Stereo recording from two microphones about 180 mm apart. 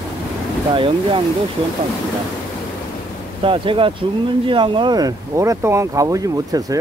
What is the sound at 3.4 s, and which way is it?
Speech, 30° right (ahead or behind).